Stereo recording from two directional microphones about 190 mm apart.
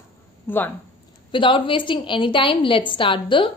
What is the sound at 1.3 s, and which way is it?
A woman's voice, 25° left (ahead or behind).